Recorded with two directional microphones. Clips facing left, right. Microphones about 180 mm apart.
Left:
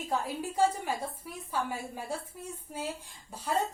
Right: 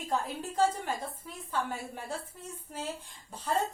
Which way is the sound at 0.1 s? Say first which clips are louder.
Even; 10° left (ahead or behind).